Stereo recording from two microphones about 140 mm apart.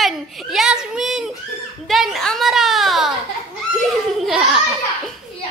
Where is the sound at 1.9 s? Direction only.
Centre (ahead or behind).